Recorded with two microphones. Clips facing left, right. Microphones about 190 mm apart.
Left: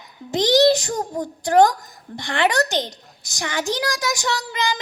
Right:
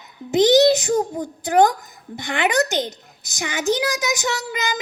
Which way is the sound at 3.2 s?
20° right (ahead or behind).